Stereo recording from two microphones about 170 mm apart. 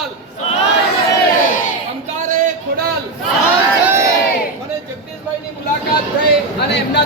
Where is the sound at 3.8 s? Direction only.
15° right (ahead or behind).